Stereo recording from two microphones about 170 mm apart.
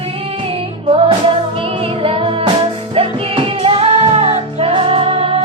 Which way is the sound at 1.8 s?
30° right (ahead or behind).